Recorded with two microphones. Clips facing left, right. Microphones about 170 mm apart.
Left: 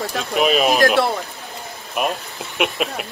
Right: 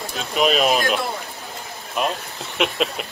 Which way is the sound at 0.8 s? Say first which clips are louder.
Left 6 dB; 80° left.